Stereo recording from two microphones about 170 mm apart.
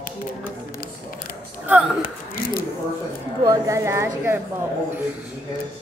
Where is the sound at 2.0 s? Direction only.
60° left (ahead or behind).